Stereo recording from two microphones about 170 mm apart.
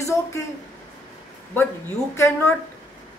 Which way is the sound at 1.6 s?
15° left (ahead or behind).